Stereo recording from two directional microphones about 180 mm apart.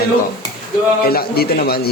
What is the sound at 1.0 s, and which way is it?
Speech, 55° left (ahead or behind).